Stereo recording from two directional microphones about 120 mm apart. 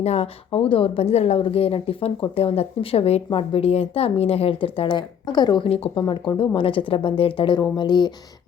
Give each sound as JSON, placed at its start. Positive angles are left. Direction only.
{"t": 0.0, "sound": "a woman's voice", "side_deg": 60}
{"t": 5.6, "sound": "a woman's voice", "side_deg": 55}
{"t": 6.0, "sound": "a woman's voice", "side_deg": 40}